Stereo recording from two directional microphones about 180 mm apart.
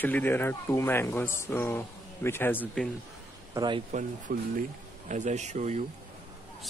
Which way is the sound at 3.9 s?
50° right (ahead or behind).